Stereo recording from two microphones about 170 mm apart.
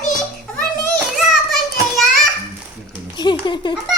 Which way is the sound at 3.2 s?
25° left (ahead or behind).